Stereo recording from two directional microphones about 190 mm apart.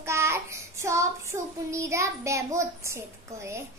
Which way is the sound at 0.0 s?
15° right (ahead or behind).